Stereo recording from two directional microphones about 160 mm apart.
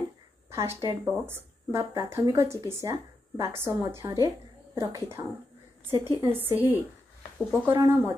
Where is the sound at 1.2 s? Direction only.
15° right (ahead or behind).